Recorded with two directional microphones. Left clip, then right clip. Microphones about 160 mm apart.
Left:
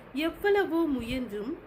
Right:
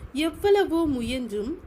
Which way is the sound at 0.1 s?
65° right (ahead or behind).